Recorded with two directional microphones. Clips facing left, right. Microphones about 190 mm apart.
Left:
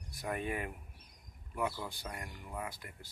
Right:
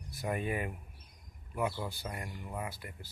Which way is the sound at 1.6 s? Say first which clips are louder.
Right 2 dB; 20° right (ahead or behind).